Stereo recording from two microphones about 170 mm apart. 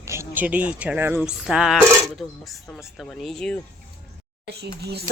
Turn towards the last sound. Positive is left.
turn(degrees=-75)  # may be behind; listen again after turning